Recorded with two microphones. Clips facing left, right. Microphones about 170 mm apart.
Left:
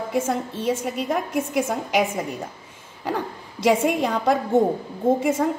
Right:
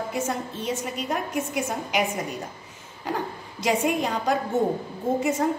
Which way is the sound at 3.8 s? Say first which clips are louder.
Left 3 dB; 60° left (ahead or behind).